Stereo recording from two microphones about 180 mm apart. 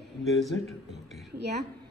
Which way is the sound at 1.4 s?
65° right (ahead or behind).